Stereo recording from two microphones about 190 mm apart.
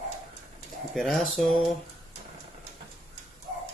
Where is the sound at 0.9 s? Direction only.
Centre (ahead or behind).